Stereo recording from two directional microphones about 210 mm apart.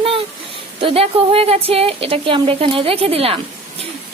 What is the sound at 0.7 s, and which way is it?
Speech, 25° right (ahead or behind).